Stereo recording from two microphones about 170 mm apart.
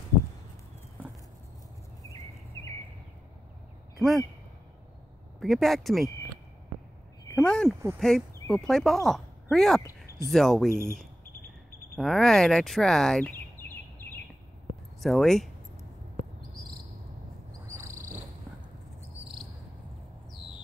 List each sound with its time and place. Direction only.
5.4 s a man's voice: centre (ahead or behind)
7.3 s a man's voice: 5° left (ahead or behind)
10.7 s speech: 15° right (ahead or behind)
12.0 s speech: centre (ahead or behind)
15.0 s speech: centre (ahead or behind)
17.5 s frog: 15° right (ahead or behind)